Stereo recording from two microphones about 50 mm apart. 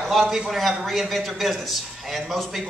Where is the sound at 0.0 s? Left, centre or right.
Centre.